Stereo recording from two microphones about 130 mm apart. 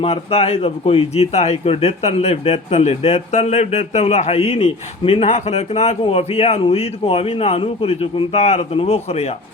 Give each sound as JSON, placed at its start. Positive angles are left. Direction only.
{"t": 0.0, "sound": "speech", "side_deg": 50}